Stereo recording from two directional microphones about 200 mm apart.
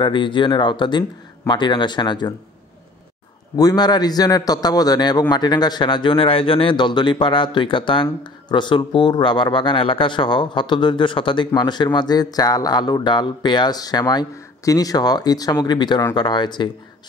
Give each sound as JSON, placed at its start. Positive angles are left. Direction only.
{"t": 0.0, "sound": "speech", "side_deg": 25}
{"t": 3.5, "sound": "speech", "side_deg": 20}